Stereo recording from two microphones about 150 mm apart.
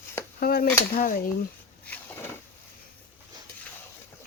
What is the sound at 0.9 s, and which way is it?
Speech, 75° left (ahead or behind).